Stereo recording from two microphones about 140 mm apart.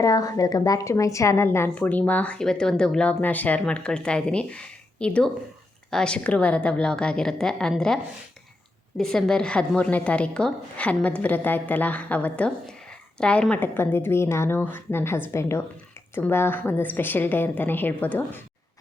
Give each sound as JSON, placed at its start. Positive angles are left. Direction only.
{"t": 0.0, "sound": "a woman's voice", "side_deg": 25}
{"t": 9.0, "sound": "a woman's voice", "side_deg": 5}